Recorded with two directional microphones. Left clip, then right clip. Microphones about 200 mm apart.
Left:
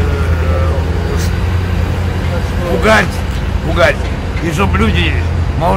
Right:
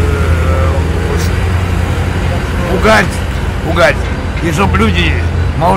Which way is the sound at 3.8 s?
10° right (ahead or behind).